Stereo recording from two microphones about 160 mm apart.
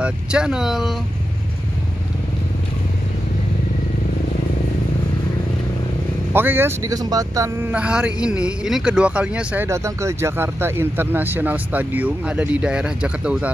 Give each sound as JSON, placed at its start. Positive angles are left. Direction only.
{"t": 0.0, "sound": "speech", "side_deg": -5}
{"t": 6.3, "sound": "speech", "side_deg": -15}
{"t": 7.7, "sound": "speech", "side_deg": -5}